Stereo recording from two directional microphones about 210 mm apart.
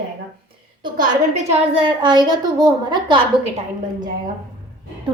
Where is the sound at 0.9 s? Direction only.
30° right (ahead or behind).